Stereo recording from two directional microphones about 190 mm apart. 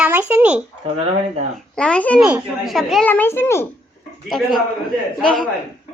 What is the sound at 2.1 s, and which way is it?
A child's voice, 5° right (ahead or behind).